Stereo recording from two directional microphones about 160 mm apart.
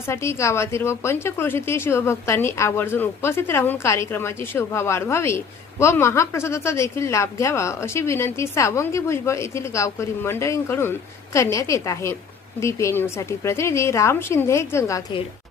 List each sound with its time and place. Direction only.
0.1 s a woman's voice: 15° left (ahead or behind)